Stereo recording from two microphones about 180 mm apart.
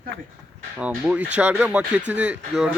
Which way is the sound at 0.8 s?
5° right (ahead or behind).